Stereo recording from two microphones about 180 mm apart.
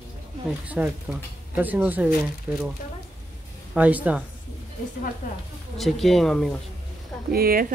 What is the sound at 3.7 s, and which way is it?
Speech, 10° right (ahead or behind).